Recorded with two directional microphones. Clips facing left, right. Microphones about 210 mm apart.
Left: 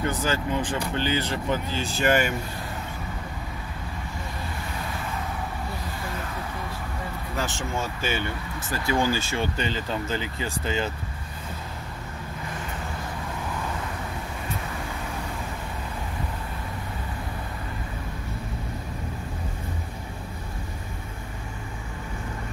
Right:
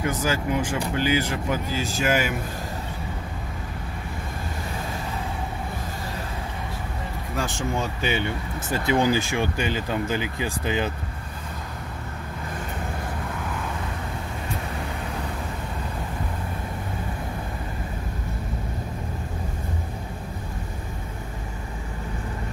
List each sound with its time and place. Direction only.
0.0 s speech: 10° right (ahead or behind)
7.4 s speech: 15° right (ahead or behind)